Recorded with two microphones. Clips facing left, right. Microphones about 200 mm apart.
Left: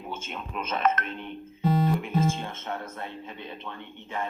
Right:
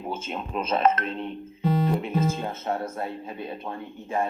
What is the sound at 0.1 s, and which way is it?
Speech, 30° right (ahead or behind).